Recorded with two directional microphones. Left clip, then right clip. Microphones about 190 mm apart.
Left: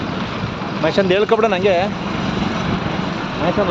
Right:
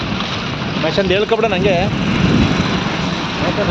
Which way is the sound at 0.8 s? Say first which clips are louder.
Even; 5° right (ahead or behind).